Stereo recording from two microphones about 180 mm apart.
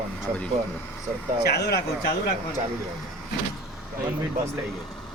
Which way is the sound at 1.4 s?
65° left (ahead or behind).